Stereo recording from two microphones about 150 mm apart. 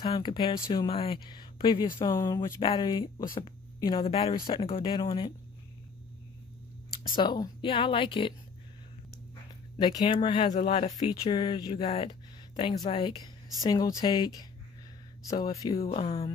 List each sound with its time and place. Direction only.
0.0 s speech: 30° left (ahead or behind)
2.2 s speech: 20° left (ahead or behind)
2.6 s speech: 30° left (ahead or behind)
7.2 s speech: 30° left (ahead or behind)
9.8 s speech: 30° left (ahead or behind)
12.1 s a sound: 30° left (ahead or behind)
12.9 s speech: 35° left (ahead or behind)
15.8 s speech: 45° left (ahead or behind)